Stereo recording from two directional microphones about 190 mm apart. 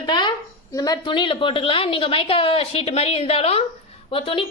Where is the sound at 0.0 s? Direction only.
25° left (ahead or behind).